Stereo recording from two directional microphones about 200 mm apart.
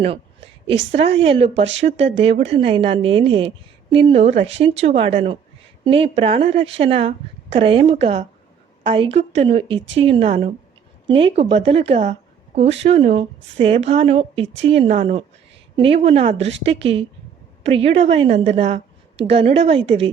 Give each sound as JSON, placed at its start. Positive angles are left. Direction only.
{"t": 0.7, "sound": "a woman's voice", "side_deg": -30}